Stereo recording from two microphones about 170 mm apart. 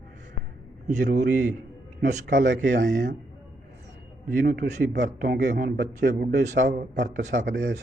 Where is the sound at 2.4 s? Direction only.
90° right.